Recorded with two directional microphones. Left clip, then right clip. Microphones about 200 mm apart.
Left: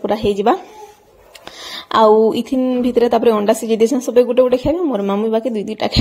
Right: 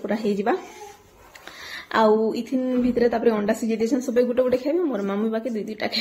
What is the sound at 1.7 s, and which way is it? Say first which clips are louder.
A woman's voice: left 8 dB; 35° left (ahead or behind).